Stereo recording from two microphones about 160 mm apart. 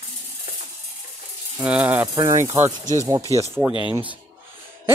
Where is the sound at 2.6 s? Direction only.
50° right (ahead or behind).